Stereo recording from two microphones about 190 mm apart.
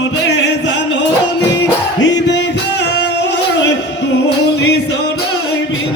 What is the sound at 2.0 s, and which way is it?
Music, 70° left (ahead or behind).